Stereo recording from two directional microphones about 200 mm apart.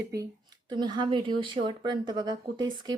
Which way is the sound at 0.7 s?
20° right (ahead or behind).